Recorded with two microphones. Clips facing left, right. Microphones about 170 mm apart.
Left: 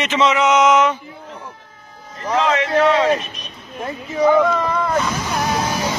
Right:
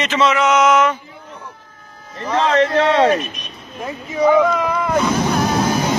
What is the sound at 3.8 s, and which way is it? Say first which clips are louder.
Speech: even; centre (ahead or behind).